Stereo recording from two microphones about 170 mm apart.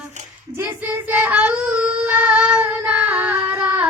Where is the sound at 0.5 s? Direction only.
10° right (ahead or behind).